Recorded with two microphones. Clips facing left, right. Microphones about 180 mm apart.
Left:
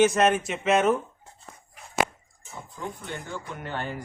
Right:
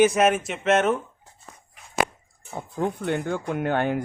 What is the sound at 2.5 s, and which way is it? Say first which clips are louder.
Speech: right 9 dB; 60° right (ahead or behind).